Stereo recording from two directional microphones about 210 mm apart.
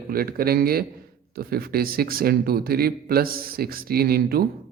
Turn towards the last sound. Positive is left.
turn(degrees=-45)  # may be behind; listen again after turning